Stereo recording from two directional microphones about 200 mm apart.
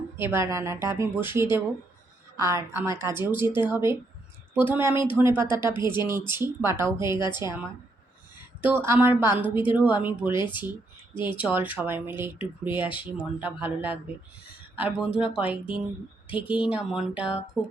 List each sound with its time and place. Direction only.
0.2 s a woman's voice: 10° right (ahead or behind)
7.4 s speech: 20° left (ahead or behind)
8.6 s a woman's voice: 10° right (ahead or behind)
10.3 s speech: 25° left (ahead or behind)
11.3 s a woman's voice: 5° right (ahead or behind)
15.4 s speech: 25° left (ahead or behind)
16.5 s speech: 5° right (ahead or behind)
17.6 s speech: 20° left (ahead or behind)